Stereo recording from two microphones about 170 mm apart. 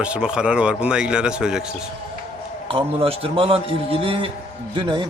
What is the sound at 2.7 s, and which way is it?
A man's voice, 30° right (ahead or behind).